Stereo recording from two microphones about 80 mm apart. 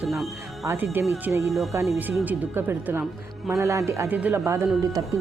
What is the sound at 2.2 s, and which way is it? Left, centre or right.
Speech, right.